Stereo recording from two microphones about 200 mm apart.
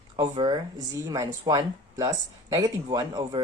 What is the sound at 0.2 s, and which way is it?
Speech, 25° right (ahead or behind).